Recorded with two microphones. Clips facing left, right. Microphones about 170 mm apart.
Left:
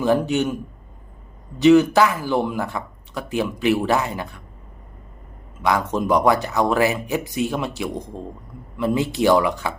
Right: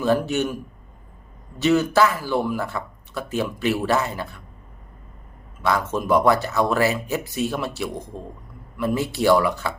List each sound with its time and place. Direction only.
0.0 s speech: 15° left (ahead or behind)
1.5 s speech: 15° left (ahead or behind)
5.6 s speech: 15° left (ahead or behind)